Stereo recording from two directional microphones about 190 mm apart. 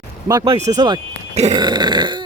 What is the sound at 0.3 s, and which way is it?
Speech, 20° right (ahead or behind).